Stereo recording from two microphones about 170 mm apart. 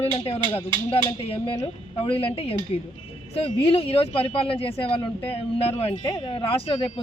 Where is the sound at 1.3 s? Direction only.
35° left (ahead or behind).